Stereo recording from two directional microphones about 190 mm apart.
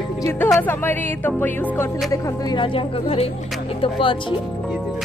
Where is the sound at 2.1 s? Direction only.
15° left (ahead or behind).